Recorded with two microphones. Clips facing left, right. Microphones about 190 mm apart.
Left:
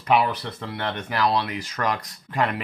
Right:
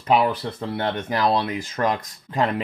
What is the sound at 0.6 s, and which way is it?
Speech, 30° right (ahead or behind).